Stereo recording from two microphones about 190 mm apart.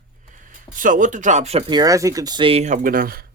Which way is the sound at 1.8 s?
15° right (ahead or behind).